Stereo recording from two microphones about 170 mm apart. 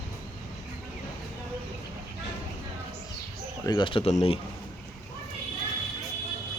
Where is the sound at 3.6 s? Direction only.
25° left (ahead or behind).